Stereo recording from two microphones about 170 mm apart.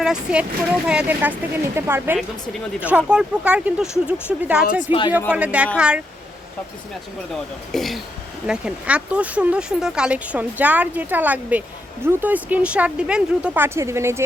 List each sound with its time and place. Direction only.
0.0 s speech: 5° right (ahead or behind)
4.9 s speech: 30° left (ahead or behind)
5.3 s speech: 5° right (ahead or behind)
7.7 s speech: centre (ahead or behind); by 14.3 s 15° right (ahead or behind)